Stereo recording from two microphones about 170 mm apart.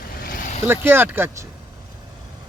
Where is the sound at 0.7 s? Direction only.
10° right (ahead or behind).